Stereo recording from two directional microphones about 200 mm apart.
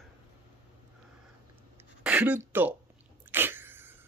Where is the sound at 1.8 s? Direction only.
5° right (ahead or behind).